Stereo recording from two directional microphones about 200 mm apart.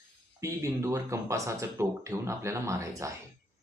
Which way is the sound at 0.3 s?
15° right (ahead or behind).